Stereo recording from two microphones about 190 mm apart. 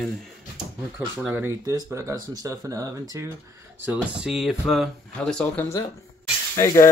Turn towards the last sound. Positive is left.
turn(degrees=15)  # may be behind; listen again after turning